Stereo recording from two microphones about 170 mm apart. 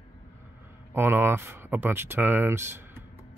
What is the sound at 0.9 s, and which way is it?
Speech, 15° right (ahead or behind).